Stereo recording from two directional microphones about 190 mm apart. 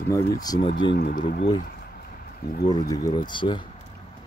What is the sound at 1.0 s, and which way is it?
Speech, 55° left (ahead or behind).